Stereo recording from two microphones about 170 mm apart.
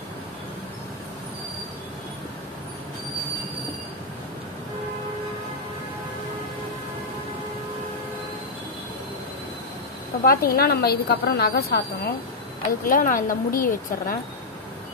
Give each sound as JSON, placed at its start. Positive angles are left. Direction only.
{"t": 10.2, "sound": "a woman's voice", "side_deg": 60}
{"t": 12.8, "sound": "speech", "side_deg": 55}